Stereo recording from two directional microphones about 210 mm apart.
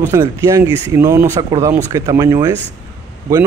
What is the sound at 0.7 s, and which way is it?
Speech, 25° left (ahead or behind).